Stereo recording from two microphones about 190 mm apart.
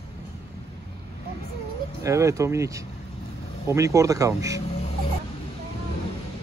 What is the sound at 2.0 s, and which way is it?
Speech, 15° right (ahead or behind).